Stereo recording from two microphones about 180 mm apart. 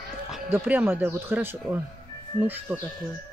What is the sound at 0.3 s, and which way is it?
Speech, 5° right (ahead or behind).